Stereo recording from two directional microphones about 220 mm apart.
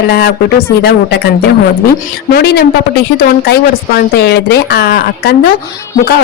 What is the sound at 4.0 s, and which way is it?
A woman's voice, 50° left (ahead or behind).